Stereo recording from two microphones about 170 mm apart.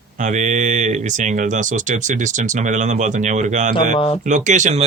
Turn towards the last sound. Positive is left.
turn(degrees=-45)  # may be behind; listen again after turning